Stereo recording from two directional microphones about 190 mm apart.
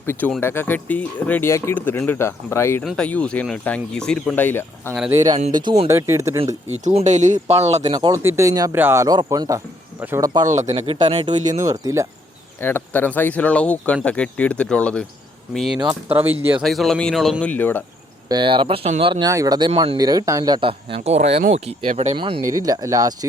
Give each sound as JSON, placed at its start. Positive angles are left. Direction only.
{"t": 0.0, "sound": "speech", "side_deg": 10}
{"t": 5.1, "sound": "speech", "side_deg": -20}
{"t": 6.8, "sound": "speech", "side_deg": -40}
{"t": 7.9, "sound": "speech", "side_deg": -20}
{"t": 10.4, "sound": "speech", "side_deg": -40}
{"t": 10.7, "sound": "speech", "side_deg": -25}
{"t": 12.5, "sound": "speech", "side_deg": 10}
{"t": 16.6, "sound": "speech", "side_deg": 0}
{"t": 18.3, "sound": "speech", "side_deg": -25}
{"t": 19.3, "sound": "speech", "side_deg": -20}